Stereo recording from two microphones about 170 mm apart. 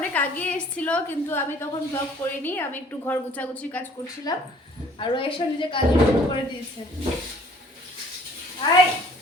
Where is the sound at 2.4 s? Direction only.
10° left (ahead or behind).